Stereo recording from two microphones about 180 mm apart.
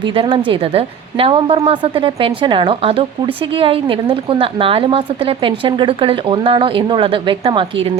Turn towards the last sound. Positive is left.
turn(degrees=-30)  # may be behind; listen again after turning